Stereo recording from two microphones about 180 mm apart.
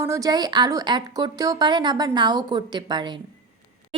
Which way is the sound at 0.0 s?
15° right (ahead or behind).